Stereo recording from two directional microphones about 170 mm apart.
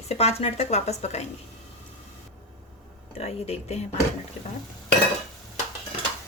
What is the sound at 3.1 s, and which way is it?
Speech, 40° left (ahead or behind).